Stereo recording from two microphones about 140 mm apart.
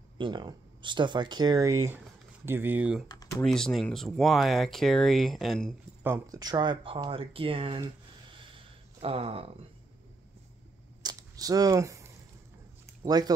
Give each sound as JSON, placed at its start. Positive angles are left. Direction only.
{"t": 0.2, "sound": "speech", "side_deg": -35}
{"t": 3.1, "sound": "speech", "side_deg": 25}
{"t": 3.4, "sound": "speech", "side_deg": 0}
{"t": 6.0, "sound": "speech", "side_deg": -25}
{"t": 8.4, "sound": "a sound", "side_deg": -40}
{"t": 11.0, "sound": "a sound", "side_deg": -25}
{"t": 13.0, "sound": "speech", "side_deg": -30}